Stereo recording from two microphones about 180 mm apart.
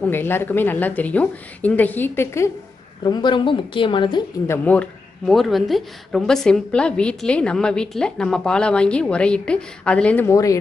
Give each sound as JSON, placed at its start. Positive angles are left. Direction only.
{"t": 0.0, "sound": "a woman's voice", "side_deg": 10}
{"t": 3.0, "sound": "a woman's voice", "side_deg": 25}
{"t": 4.5, "sound": "speech", "side_deg": 10}